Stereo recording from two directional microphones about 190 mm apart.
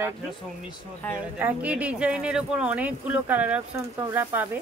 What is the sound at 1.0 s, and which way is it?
Speech, 10° left (ahead or behind).